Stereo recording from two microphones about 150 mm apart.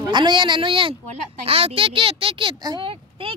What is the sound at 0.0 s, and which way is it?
Speech, 30° right (ahead or behind).